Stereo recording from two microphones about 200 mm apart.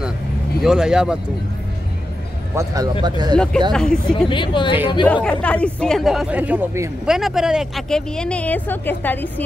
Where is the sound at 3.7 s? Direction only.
5° left (ahead or behind).